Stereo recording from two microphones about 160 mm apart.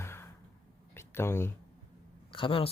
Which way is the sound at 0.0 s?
15° left (ahead or behind).